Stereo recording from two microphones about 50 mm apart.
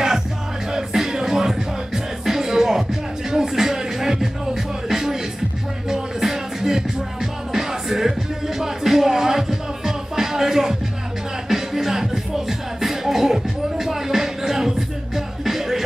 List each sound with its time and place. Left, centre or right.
0.7 s music: centre